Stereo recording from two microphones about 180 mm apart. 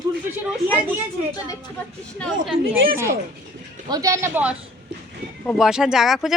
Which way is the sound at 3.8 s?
20° right (ahead or behind).